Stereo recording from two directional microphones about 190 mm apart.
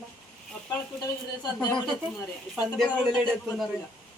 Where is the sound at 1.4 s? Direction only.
20° left (ahead or behind).